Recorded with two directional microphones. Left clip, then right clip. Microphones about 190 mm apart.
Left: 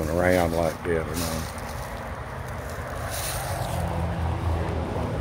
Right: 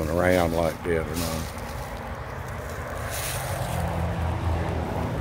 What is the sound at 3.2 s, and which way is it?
Boat, 60° right (ahead or behind).